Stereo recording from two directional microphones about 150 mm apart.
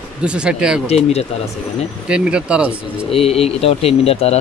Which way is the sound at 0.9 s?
45° left (ahead or behind).